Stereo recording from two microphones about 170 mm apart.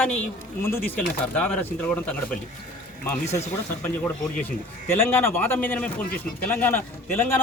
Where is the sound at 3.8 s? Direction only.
10° left (ahead or behind).